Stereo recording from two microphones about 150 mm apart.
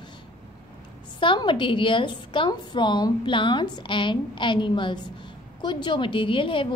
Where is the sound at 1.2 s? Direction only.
30° left (ahead or behind).